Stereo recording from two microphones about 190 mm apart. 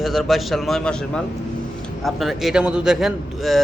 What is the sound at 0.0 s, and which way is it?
A man's voice, centre (ahead or behind).